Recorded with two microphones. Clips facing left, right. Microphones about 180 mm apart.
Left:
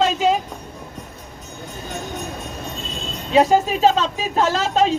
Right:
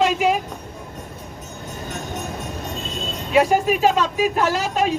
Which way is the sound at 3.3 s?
25° left (ahead or behind).